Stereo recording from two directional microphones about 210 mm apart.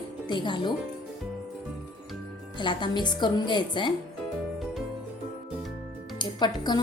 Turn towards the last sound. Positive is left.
turn(degrees=20)  # may be behind; listen again after turning